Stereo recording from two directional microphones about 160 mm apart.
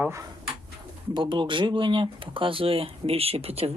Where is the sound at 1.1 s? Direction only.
30° right (ahead or behind).